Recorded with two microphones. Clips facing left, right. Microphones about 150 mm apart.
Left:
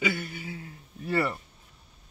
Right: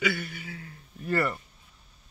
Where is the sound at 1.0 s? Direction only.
10° left (ahead or behind).